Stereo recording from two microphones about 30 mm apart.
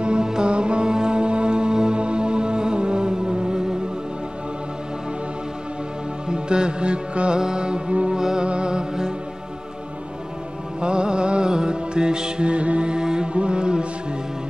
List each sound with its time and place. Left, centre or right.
0.2 s music: right
0.5 s music: right
6.2 s music: right
10.8 s music: right
12.4 s mantra: right
12.9 s mantra: right